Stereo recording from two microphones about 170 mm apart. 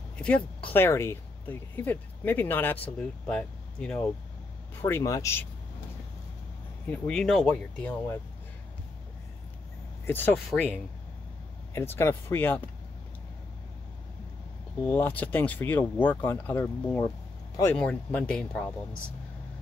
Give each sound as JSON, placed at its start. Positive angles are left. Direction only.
{"t": 0.2, "sound": "speech", "side_deg": 5}
{"t": 6.9, "sound": "speech", "side_deg": 5}
{"t": 10.0, "sound": "speech", "side_deg": 10}
{"t": 11.7, "sound": "speech", "side_deg": 15}
{"t": 14.8, "sound": "speech", "side_deg": 10}